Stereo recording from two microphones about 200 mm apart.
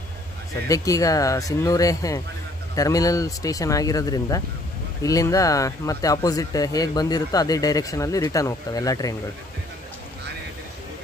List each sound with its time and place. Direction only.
0.7 s speech: 15° left (ahead or behind)